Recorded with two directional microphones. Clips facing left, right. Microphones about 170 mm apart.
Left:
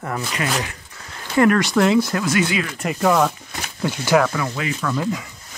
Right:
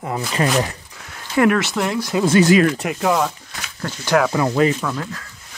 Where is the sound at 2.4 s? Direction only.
45° right (ahead or behind).